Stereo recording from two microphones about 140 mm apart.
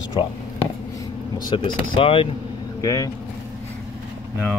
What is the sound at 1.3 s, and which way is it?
Speech, 35° left (ahead or behind).